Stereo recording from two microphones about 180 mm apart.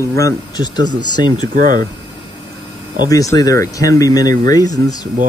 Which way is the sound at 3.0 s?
20° left (ahead or behind).